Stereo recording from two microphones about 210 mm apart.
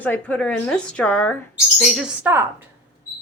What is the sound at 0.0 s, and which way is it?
A woman's voice, 5° left (ahead or behind).